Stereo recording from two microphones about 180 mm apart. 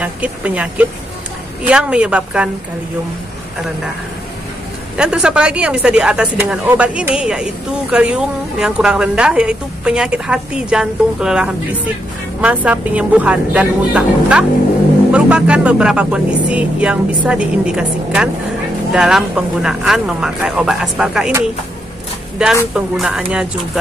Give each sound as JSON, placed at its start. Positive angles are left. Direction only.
{"t": 0.0, "sound": "speech", "side_deg": -5}
{"t": 4.9, "sound": "speech", "side_deg": -5}
{"t": 22.4, "sound": "speech", "side_deg": -5}